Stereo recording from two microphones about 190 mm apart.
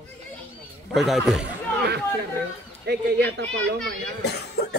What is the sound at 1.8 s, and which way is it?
A woman's voice, 60° right (ahead or behind).